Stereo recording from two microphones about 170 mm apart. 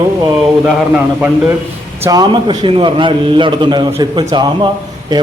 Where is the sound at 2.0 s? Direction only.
25° right (ahead or behind).